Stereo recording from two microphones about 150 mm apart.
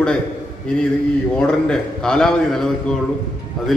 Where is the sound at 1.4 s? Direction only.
5° left (ahead or behind).